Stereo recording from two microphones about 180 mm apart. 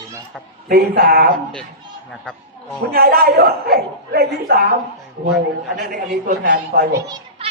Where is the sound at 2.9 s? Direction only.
55° right (ahead or behind).